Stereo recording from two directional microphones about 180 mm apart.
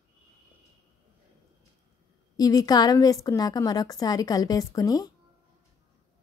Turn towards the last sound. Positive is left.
turn(degrees=20)  # may be behind; listen again after turning